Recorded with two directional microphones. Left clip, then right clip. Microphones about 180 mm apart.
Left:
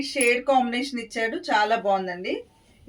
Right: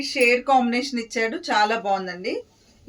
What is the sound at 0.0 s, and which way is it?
Speech, 15° right (ahead or behind).